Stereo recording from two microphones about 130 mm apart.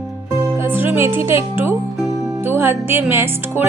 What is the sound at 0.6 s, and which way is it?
Speech, 15° right (ahead or behind).